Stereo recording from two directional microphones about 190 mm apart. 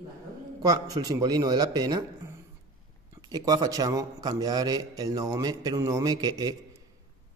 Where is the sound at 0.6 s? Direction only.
20° right (ahead or behind).